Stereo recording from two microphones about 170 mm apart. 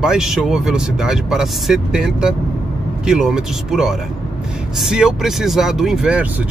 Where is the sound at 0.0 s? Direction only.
5° right (ahead or behind).